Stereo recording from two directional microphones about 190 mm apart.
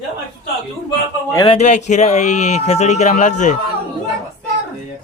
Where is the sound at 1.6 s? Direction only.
40° left (ahead or behind).